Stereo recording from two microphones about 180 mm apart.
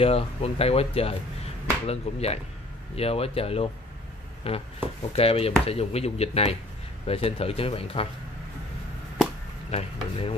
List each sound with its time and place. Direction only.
0.0 s speech: 35° left (ahead or behind)
9.7 s speech: 35° left (ahead or behind)